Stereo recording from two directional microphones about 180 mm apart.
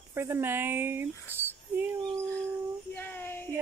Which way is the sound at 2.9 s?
10° left (ahead or behind).